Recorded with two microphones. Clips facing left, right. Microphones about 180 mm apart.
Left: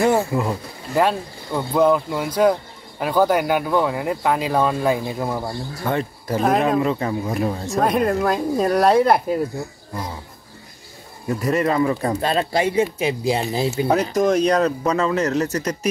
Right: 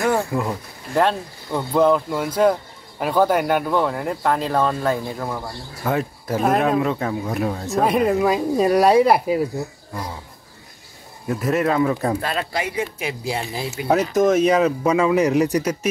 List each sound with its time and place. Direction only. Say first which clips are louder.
0.2 s speech: left 1 dB; centre (ahead or behind)
5.9 s speech: right 1 dB; 5° right (ahead or behind)
11.2 s speech: even; centre (ahead or behind)
12.2 s speech: left 5 dB; 30° left (ahead or behind)
14.1 s speech: right 2 dB; centre (ahead or behind)